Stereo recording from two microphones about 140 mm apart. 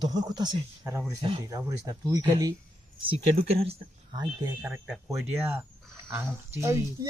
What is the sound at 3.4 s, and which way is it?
Speech, 45° right (ahead or behind).